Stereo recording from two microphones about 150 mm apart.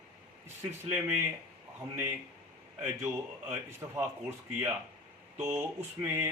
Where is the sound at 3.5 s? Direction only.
15° right (ahead or behind).